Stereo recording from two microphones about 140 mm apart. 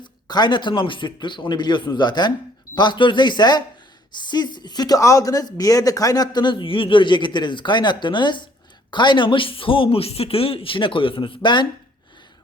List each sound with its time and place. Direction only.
0.0 s speech: 30° left (ahead or behind)